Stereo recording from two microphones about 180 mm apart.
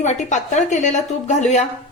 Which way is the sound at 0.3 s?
40° left (ahead or behind).